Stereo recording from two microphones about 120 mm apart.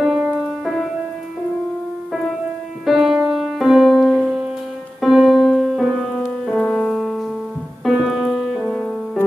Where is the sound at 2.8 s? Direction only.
Centre (ahead or behind).